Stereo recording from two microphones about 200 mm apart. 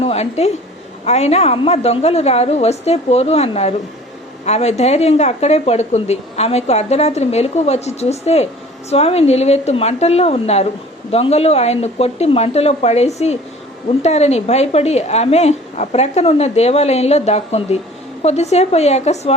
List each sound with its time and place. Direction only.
0.0 s a woman's voice: 30° left (ahead or behind)